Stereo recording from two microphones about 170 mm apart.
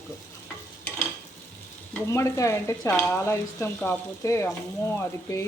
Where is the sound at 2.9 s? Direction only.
5° left (ahead or behind).